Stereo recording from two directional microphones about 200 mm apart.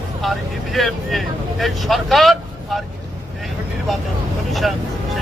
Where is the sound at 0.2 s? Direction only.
Centre (ahead or behind).